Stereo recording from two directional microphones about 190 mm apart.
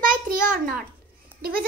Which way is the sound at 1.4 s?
50° right (ahead or behind).